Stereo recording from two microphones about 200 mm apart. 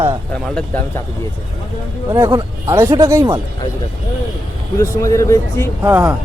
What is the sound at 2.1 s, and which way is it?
Speech, 15° right (ahead or behind).